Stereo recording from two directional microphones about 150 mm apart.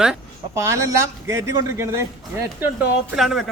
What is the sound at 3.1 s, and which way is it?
Speech, centre (ahead or behind).